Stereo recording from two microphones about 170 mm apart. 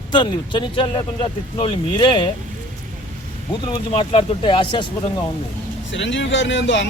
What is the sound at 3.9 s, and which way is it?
A man's voice, 35° left (ahead or behind).